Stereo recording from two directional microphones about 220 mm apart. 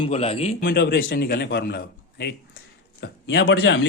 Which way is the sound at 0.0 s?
25° left (ahead or behind).